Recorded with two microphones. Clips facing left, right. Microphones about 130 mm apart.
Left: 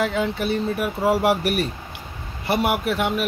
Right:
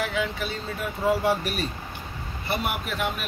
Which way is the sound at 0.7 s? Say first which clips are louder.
Right 1 dB; 75° left (ahead or behind).